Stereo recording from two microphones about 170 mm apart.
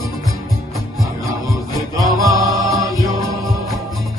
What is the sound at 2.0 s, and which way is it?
Music, 20° right (ahead or behind).